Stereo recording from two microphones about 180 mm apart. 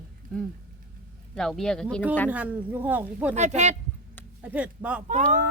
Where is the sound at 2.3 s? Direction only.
10° right (ahead or behind).